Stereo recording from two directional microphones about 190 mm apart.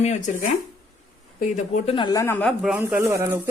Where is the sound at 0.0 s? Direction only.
40° left (ahead or behind).